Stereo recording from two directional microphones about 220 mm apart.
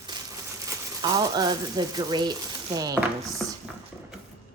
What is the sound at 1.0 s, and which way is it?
A woman's voice, 15° right (ahead or behind).